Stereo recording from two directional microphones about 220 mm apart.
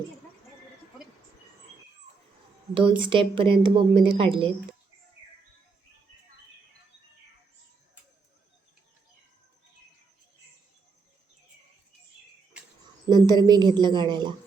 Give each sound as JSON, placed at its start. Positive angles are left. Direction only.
{"t": 3.0, "sound": "a woman's voice", "side_deg": -25}
{"t": 13.1, "sound": "a woman's voice", "side_deg": -20}